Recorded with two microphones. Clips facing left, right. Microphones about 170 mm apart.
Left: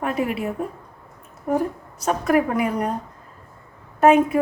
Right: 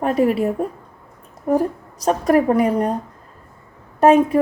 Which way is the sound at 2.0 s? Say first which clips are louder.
Right 4 dB; 35° right (ahead or behind).